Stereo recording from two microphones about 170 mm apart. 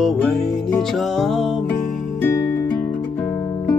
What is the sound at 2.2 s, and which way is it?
Music, 15° left (ahead or behind).